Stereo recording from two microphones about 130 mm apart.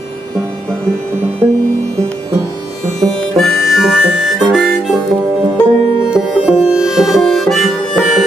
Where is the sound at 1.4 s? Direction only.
20° right (ahead or behind).